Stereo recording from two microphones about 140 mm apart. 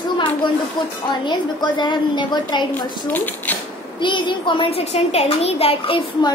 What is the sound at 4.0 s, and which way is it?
A child's voice, 35° left (ahead or behind).